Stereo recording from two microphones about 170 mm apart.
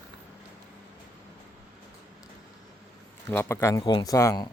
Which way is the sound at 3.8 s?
25° left (ahead or behind).